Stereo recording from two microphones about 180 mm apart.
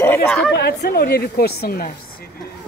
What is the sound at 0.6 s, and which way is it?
Speech, 60° left (ahead or behind).